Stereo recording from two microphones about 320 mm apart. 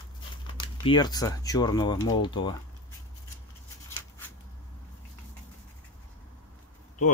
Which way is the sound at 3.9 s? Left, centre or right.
Centre.